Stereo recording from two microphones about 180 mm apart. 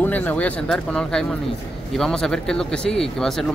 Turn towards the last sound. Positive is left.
turn(degrees=0)  # may be behind; listen again after turning